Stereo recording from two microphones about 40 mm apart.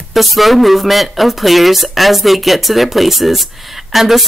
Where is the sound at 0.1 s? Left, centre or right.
Centre.